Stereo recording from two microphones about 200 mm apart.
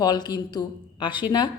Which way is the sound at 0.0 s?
20° left (ahead or behind).